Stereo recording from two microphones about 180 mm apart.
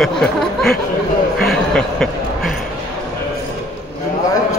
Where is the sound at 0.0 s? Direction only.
Centre (ahead or behind).